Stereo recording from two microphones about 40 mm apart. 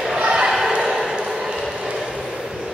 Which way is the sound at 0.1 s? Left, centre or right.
Centre.